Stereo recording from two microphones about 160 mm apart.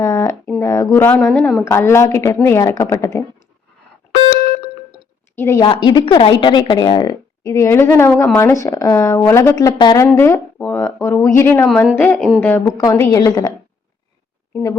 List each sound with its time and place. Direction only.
0.0 s a woman's voice: 20° left (ahead or behind)
5.4 s a woman's voice: 15° left (ahead or behind)
5.6 s a woman's voice: 30° left (ahead or behind); by 9.6 s 15° left (ahead or behind)
9.6 s speech: 25° left (ahead or behind)
10.1 s a woman's voice: 15° left (ahead or behind)
14.5 s speech: 20° left (ahead or behind)